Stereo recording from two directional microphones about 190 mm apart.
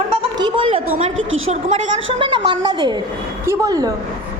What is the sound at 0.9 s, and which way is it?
Speech, 90° right.